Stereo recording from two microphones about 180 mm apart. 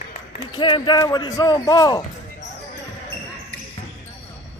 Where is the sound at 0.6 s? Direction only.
25° left (ahead or behind).